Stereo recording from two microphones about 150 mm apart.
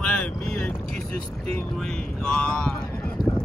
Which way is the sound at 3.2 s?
80° left.